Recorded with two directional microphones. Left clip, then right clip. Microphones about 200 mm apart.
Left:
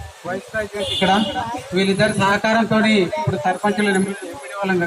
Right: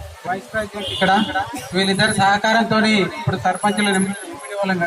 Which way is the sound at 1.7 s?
25° right (ahead or behind).